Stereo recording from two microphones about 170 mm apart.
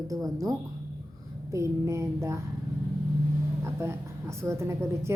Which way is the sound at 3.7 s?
15° right (ahead or behind).